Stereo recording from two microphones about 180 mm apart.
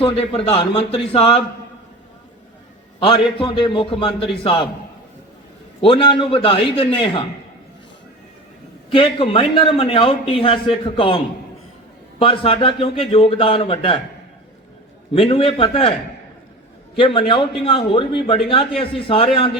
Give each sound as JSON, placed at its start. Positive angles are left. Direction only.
{"t": 0.0, "sound": "a man's voice", "side_deg": 35}
{"t": 3.1, "sound": "a man's voice", "side_deg": 30}
{"t": 5.8, "sound": "a man's voice", "side_deg": 30}
{"t": 8.9, "sound": "a man's voice", "side_deg": 30}
{"t": 12.2, "sound": "a man's voice", "side_deg": 30}
{"t": 15.1, "sound": "a man's voice", "side_deg": 30}
{"t": 17.0, "sound": "a man's voice", "side_deg": 30}